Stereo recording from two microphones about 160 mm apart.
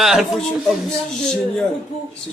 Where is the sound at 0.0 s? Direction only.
5° right (ahead or behind).